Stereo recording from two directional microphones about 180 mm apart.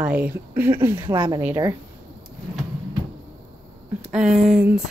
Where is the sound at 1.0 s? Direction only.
25° right (ahead or behind).